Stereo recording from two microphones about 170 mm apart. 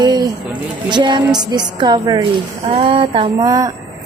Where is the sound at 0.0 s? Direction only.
25° right (ahead or behind).